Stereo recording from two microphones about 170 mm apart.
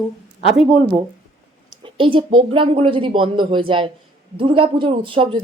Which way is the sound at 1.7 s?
30° right (ahead or behind).